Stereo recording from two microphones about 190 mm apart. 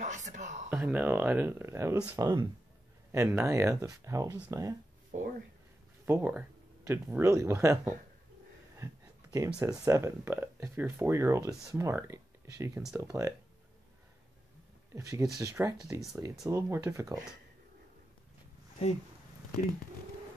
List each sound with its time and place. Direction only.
0.0 s a sound: 40° right (ahead or behind)
0.7 s speech: 10° right (ahead or behind)
6.0 s speech: 10° right (ahead or behind)
8.7 s a sound: 15° right (ahead or behind)
9.6 s speech: 15° right (ahead or behind)
15.0 s speech: 15° right (ahead or behind)